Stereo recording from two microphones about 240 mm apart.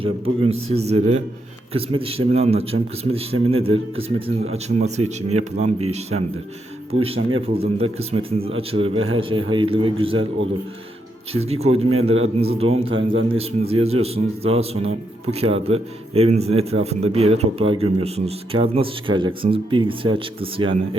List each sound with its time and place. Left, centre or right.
0.0 s a man's voice: right
11.3 s a man's voice: right